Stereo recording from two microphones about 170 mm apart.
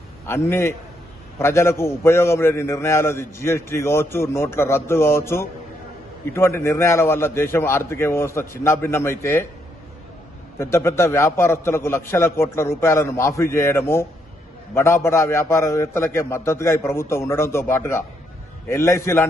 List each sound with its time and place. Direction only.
0.5 s a man's voice: 15° left (ahead or behind)
10.6 s a man's voice: 15° left (ahead or behind)